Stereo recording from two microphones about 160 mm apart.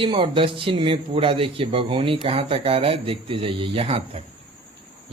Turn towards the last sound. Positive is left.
turn(degrees=-35)  # may be behind; listen again after turning